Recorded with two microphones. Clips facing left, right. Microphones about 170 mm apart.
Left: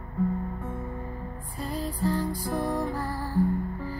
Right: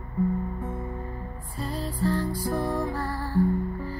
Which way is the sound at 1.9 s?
15° left (ahead or behind).